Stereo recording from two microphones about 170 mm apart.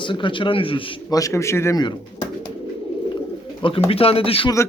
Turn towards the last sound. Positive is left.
turn(degrees=35)  # may be behind; listen again after turning